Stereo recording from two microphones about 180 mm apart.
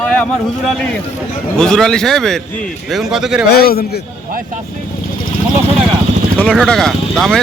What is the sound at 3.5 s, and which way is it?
Speech, 60° left (ahead or behind).